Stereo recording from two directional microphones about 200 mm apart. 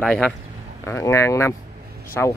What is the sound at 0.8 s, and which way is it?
Speech, 15° left (ahead or behind).